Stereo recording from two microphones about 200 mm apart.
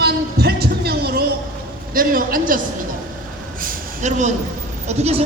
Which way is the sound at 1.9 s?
45° right (ahead or behind).